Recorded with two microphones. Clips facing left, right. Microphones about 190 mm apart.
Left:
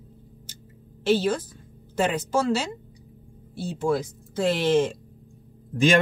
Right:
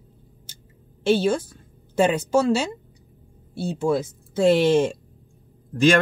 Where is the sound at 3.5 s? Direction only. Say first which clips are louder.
Right 2 dB; 25° right (ahead or behind).